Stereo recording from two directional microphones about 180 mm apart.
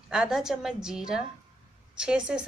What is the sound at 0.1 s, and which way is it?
A woman's voice, 5° right (ahead or behind).